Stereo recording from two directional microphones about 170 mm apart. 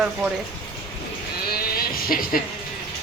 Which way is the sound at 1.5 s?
60° left (ahead or behind).